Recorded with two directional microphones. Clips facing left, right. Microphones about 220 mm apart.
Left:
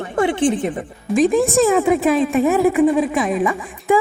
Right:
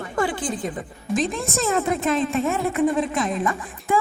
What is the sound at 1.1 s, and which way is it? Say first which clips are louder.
Speech: left 8 dB; 10° left (ahead or behind).